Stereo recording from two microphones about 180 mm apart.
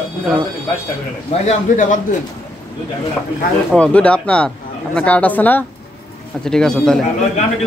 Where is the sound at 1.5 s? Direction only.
45° left (ahead or behind).